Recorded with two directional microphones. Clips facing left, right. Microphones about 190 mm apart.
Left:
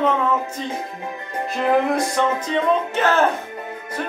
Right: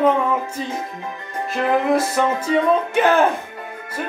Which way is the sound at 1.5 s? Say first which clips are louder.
Right 1 dB; 5° right (ahead or behind).